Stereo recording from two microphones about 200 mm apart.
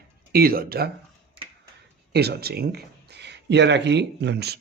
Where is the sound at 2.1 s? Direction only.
55° right (ahead or behind).